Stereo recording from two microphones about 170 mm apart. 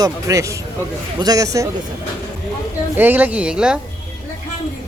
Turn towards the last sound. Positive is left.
turn(degrees=-5)  # may be behind; listen again after turning